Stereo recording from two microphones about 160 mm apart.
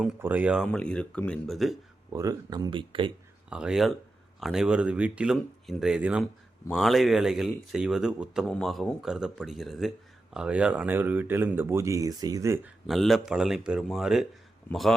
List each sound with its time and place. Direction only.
0.2 s speech: 10° right (ahead or behind)
0.7 s speech: 5° left (ahead or behind)
2.1 s speech: 20° right (ahead or behind)
3.5 s speech: 5° right (ahead or behind); by 12.5 s 20° right (ahead or behind)
12.6 s speech: centre (ahead or behind)